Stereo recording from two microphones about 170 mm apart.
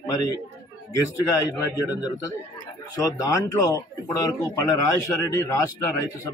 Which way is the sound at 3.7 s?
20° left (ahead or behind).